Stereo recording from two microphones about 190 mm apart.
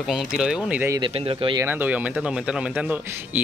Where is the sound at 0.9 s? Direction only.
25° right (ahead or behind).